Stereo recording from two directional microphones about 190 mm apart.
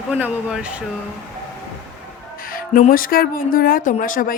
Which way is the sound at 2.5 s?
45° left (ahead or behind).